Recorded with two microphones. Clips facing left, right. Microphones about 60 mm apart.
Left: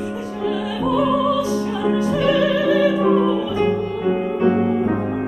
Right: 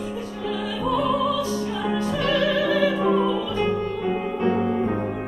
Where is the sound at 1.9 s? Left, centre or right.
Centre.